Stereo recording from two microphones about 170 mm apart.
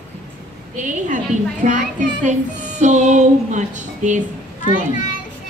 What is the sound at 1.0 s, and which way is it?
A child's voice, 50° right (ahead or behind).